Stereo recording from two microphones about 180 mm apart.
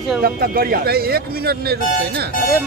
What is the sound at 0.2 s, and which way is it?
A man's voice, 55° right (ahead or behind).